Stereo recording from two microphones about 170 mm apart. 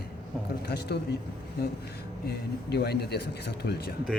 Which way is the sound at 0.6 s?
75° left (ahead or behind).